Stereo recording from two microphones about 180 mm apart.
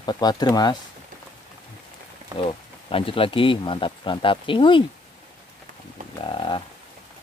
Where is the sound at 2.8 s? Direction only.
30° left (ahead or behind).